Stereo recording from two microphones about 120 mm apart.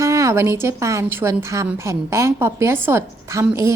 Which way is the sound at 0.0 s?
25° right (ahead or behind).